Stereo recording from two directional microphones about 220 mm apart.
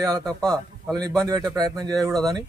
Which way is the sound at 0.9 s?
15° right (ahead or behind).